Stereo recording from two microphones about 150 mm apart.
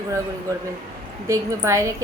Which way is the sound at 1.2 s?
20° right (ahead or behind).